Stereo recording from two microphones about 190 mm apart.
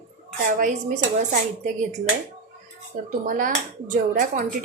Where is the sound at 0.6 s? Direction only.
40° right (ahead or behind).